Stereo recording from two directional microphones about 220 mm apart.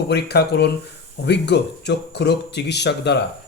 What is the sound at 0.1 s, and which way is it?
A man's voice, 45° left (ahead or behind).